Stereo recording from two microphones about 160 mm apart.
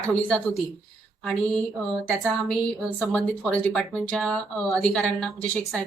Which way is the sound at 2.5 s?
Centre (ahead or behind).